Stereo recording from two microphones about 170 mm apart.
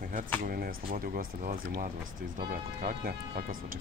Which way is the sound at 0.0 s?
55° right (ahead or behind).